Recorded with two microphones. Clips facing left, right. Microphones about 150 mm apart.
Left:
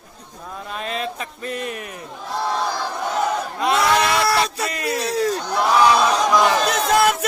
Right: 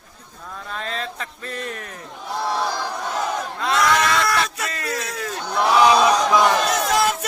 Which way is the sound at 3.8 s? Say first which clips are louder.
Even; 25° left (ahead or behind).